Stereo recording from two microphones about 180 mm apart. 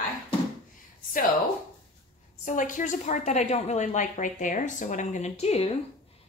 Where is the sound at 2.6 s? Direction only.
45° left (ahead or behind).